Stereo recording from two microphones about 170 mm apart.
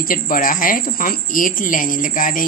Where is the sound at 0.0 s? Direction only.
55° left (ahead or behind).